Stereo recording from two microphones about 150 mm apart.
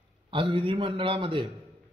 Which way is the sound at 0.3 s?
35° right (ahead or behind).